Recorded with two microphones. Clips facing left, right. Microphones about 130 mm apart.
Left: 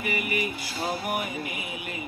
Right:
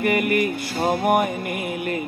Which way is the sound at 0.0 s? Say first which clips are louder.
Right 9 dB; 50° right (ahead or behind).